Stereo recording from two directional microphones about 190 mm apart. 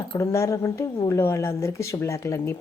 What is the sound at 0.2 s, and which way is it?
A woman's voice, 15° left (ahead or behind).